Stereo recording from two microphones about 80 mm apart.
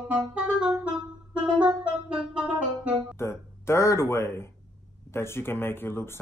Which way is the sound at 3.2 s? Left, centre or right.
Left.